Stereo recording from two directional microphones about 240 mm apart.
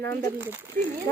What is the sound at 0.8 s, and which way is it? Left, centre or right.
Speech, right.